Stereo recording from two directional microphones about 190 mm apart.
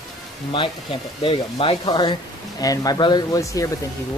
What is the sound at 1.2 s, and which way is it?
Speech, 25° left (ahead or behind).